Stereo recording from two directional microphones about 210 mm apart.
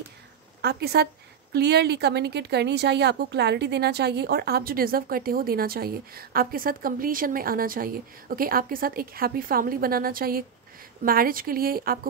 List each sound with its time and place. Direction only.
0.6 s a woman's voice: 50° right (ahead or behind)